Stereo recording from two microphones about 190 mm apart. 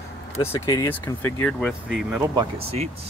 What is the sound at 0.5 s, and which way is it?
Speech, 15° left (ahead or behind).